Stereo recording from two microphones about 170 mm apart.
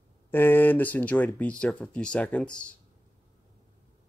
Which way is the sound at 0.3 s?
10° left (ahead or behind).